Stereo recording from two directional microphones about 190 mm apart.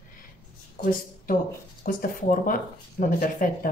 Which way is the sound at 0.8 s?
45° left (ahead or behind).